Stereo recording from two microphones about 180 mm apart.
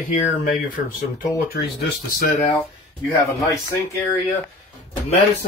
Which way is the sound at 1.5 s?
55° left (ahead or behind).